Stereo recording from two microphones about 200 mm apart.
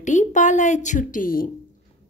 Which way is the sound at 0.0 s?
40° left (ahead or behind).